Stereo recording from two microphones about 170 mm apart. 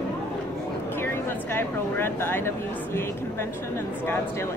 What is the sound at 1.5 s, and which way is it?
Speech, 15° left (ahead or behind).